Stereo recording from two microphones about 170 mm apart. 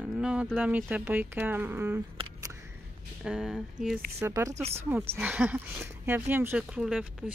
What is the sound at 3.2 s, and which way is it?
Speech, 5° right (ahead or behind).